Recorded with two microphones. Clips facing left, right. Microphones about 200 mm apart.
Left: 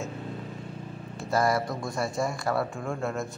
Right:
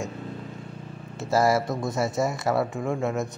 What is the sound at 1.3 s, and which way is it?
Speech, 25° right (ahead or behind).